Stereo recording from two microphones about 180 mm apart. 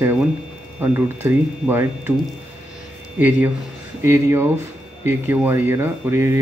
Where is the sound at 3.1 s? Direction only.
10° right (ahead or behind).